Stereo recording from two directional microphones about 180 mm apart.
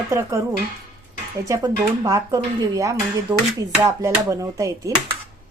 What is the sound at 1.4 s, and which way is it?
Speech, 20° right (ahead or behind).